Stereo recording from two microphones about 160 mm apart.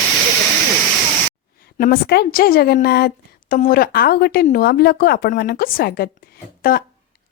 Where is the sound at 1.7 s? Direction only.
70° left (ahead or behind).